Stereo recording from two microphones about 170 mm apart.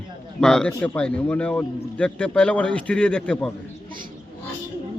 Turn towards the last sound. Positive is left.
turn(degrees=5)  # may be behind; listen again after turning